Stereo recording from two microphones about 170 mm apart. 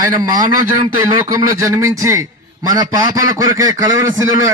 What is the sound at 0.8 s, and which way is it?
A man's voice, 25° right (ahead or behind).